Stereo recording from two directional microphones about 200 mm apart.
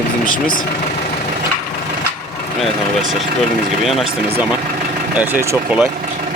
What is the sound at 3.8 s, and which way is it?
Speech, centre (ahead or behind).